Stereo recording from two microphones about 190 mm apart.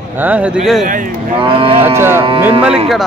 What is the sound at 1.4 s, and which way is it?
Speech, 30° right (ahead or behind).